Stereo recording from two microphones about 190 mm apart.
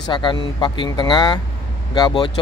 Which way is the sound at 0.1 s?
25° left (ahead or behind).